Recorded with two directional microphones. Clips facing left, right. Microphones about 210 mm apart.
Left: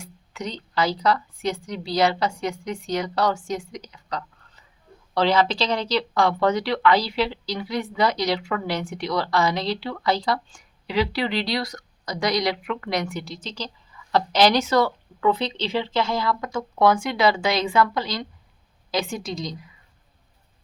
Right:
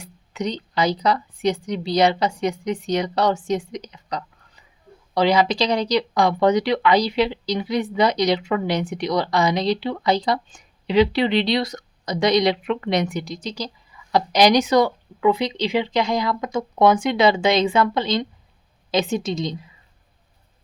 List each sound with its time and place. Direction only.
0.0 s speech: 20° right (ahead or behind)